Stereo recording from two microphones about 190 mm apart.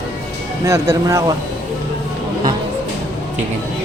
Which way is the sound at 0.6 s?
15° right (ahead or behind).